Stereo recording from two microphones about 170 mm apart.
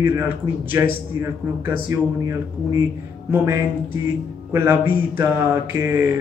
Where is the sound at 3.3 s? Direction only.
15° right (ahead or behind).